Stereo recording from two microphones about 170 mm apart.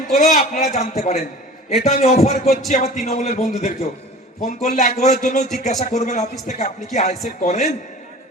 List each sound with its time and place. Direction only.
0.2 s a man's voice: 45° left (ahead or behind)